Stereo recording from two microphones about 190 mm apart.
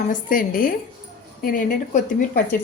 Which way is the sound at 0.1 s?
45° left (ahead or behind).